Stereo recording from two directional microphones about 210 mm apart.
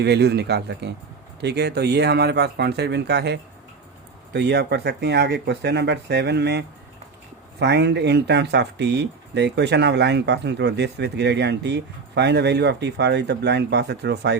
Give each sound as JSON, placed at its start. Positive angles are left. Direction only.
{"t": 0.0, "sound": "speech", "side_deg": -50}